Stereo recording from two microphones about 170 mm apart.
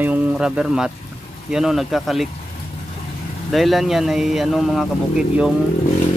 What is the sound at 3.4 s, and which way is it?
Speech, centre (ahead or behind).